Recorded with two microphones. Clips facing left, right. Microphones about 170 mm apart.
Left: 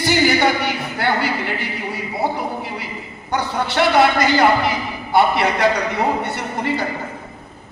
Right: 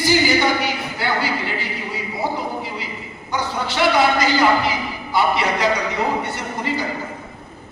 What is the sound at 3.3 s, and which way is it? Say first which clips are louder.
A man's voice: left 3 dB; 60° left (ahead or behind).